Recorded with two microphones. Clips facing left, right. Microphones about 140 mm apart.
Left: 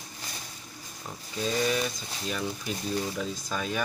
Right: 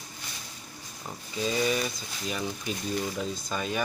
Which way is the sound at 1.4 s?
5° right (ahead or behind).